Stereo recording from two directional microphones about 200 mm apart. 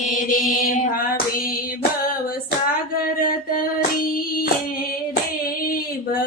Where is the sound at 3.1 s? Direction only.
45° left (ahead or behind).